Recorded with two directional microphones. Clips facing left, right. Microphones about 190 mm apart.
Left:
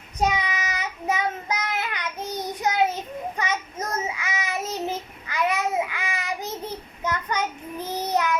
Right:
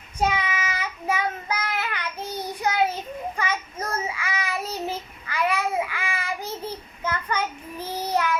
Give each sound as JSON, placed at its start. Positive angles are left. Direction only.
{"t": 0.2, "sound": "child singing", "side_deg": 20}